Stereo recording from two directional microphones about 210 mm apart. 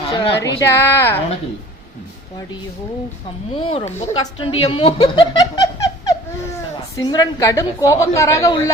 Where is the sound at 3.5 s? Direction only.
25° left (ahead or behind).